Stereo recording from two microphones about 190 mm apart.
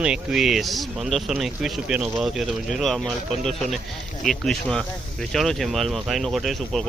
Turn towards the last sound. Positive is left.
turn(degrees=0)  # may be behind; listen again after turning